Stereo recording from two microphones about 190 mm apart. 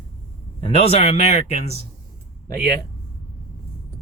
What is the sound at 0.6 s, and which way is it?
A man's voice, 30° left (ahead or behind).